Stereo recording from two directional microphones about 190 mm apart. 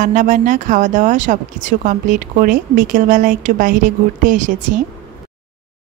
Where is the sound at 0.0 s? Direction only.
40° right (ahead or behind).